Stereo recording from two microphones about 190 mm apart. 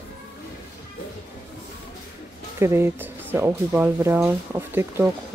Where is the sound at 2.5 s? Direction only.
15° right (ahead or behind).